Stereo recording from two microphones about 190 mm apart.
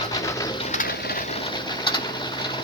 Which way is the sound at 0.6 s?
40° left (ahead or behind).